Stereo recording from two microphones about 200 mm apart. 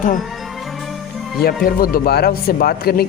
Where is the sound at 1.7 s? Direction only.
45° left (ahead or behind).